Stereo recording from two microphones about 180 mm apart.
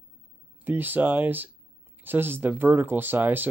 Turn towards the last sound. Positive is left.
turn(degrees=-10)  # may be behind; listen again after turning